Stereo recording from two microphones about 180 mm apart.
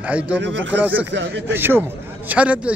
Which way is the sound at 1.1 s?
80° right.